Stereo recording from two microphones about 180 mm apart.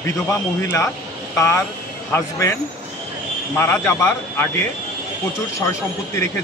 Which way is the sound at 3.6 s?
15° left (ahead or behind).